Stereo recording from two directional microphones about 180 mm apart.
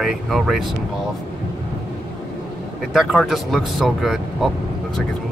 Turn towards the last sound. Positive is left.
turn(degrees=0)  # may be behind; listen again after turning